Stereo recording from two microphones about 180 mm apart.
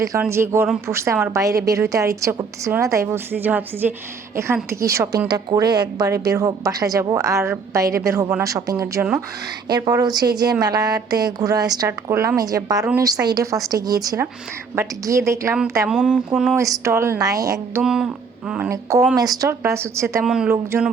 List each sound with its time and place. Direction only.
0.2 s a woman's voice: 15° right (ahead or behind)
15.9 s mantra: 5° right (ahead or behind)
16.6 s a woman's voice: 15° right (ahead or behind)
17.8 s speech: 5° right (ahead or behind)
18.7 s a woman's voice: 15° right (ahead or behind)
20.2 s mantra: 5° right (ahead or behind)